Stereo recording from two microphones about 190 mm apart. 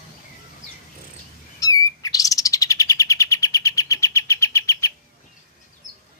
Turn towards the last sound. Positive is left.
turn(degrees=15)  # may be behind; listen again after turning